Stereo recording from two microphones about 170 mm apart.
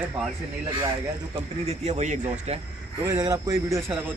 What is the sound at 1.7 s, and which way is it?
Speech, 40° right (ahead or behind).